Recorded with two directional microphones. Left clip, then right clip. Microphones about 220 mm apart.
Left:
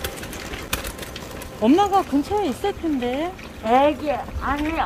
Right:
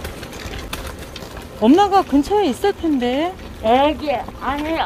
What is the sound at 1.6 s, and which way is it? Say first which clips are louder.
Speech: right 4 dB; 25° right (ahead or behind).